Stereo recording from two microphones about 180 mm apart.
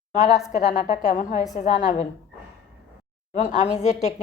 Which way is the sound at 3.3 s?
40° left (ahead or behind).